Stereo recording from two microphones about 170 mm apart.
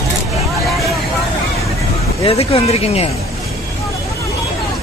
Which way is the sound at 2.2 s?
35° left (ahead or behind).